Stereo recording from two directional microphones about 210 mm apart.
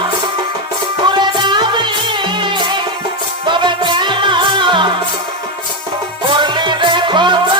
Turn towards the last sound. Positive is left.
turn(degrees=-20)  # may be behind; listen again after turning